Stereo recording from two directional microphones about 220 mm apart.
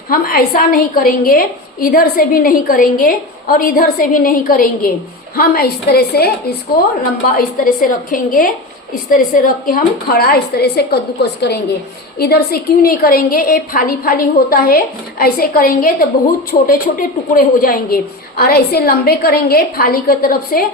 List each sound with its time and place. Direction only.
0.1 s a woman's voice: 40° left (ahead or behind)
7.3 s a woman's voice: 40° left (ahead or behind)